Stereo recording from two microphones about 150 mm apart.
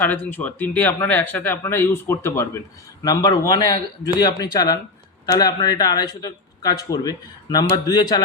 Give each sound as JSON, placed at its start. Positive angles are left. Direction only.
{"t": 0.0, "sound": "speech", "side_deg": 10}